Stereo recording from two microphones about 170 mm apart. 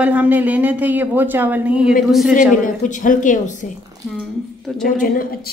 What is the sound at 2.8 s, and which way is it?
Speech, 50° left (ahead or behind).